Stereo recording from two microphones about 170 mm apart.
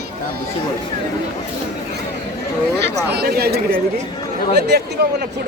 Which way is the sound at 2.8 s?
75° right (ahead or behind).